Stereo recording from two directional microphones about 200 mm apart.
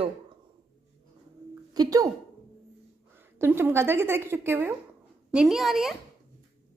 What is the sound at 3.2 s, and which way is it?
A woman's voice, 10° right (ahead or behind).